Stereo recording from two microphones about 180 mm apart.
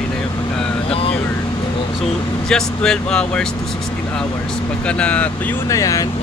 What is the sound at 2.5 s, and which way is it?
Speech, 5° left (ahead or behind).